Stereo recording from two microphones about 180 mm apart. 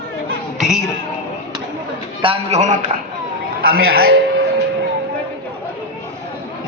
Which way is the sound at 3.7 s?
60° right (ahead or behind).